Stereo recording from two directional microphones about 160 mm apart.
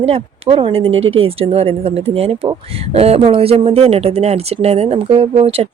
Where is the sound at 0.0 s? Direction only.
35° right (ahead or behind).